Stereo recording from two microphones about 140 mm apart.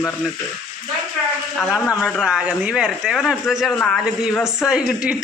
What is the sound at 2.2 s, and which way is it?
A man's voice, 10° right (ahead or behind).